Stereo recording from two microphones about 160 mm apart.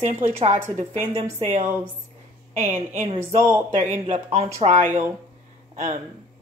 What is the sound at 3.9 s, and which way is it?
Speech, 45° right (ahead or behind).